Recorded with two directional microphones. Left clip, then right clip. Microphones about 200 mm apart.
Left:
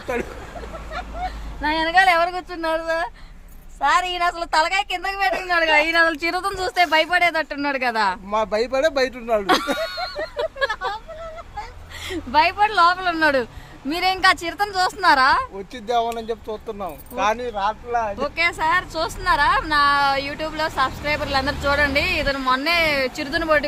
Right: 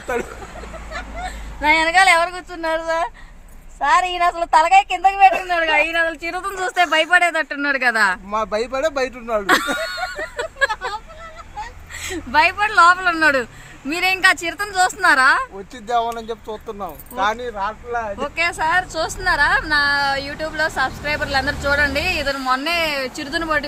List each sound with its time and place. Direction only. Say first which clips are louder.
1.6 s a woman's voice: right 3 dB; 10° right (ahead or behind)
5.6 s a woman's voice: even; 15° left (ahead or behind)
5.9 s speech: left 2 dB; 25° left (ahead or behind)
6.4 s speech: right 3 dB; centre (ahead or behind)
10.3 s a sound: right 3 dB; centre (ahead or behind)
12.0 s speech: right 2 dB; centre (ahead or behind)